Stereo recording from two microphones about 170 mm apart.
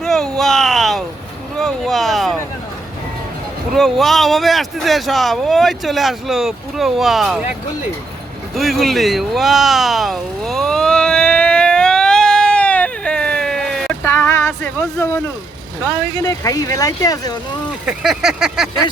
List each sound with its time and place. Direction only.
0.0 s a sound: centre (ahead or behind)
3.8 s speech: centre (ahead or behind)
8.5 s a sound: centre (ahead or behind)
14.1 s music: 15° left (ahead or behind)
14.9 s speech: 15° left (ahead or behind)
17.8 s speech: centre (ahead or behind)